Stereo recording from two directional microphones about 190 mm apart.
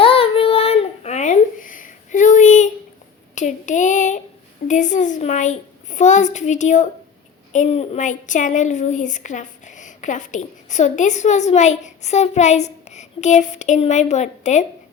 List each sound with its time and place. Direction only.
0.0 s child singing: 30° left (ahead or behind)
4.7 s a woman's voice: 40° left (ahead or behind)